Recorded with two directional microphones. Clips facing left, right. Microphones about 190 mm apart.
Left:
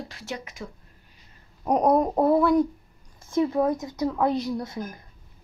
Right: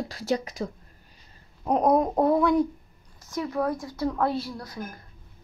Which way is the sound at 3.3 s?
25° left (ahead or behind).